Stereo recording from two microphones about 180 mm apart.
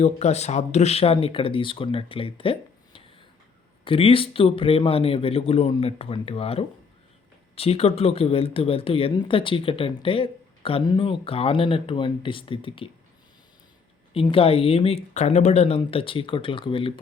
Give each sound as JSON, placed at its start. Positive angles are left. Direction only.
{"t": 0.0, "sound": "speech", "side_deg": 40}
{"t": 14.1, "sound": "speech", "side_deg": 30}